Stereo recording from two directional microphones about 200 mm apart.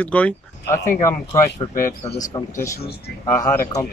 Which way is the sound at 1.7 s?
35° left (ahead or behind).